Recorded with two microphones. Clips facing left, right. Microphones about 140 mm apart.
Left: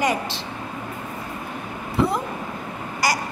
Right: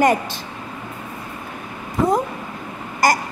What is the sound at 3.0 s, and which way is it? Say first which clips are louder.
Speech: right 6 dB; 50° right (ahead or behind).